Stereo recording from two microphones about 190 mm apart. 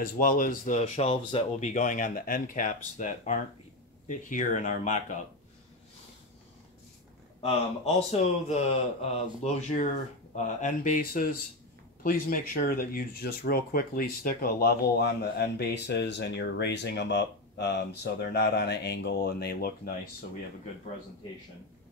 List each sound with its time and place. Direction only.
0.0 s a man's voice: 45° left (ahead or behind)
7.4 s a man's voice: 35° left (ahead or behind); by 19.9 s 55° left (ahead or behind)